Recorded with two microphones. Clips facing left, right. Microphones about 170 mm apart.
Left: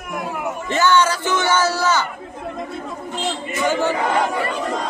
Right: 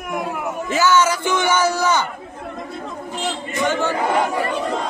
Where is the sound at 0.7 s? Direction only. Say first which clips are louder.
Even; 5° right (ahead or behind).